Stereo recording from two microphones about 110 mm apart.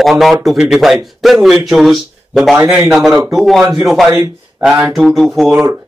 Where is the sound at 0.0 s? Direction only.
Centre (ahead or behind).